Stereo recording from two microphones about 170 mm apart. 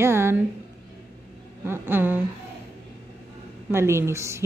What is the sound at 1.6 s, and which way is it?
Speech, 15° right (ahead or behind).